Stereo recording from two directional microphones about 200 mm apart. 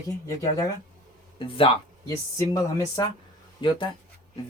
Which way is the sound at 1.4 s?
25° left (ahead or behind).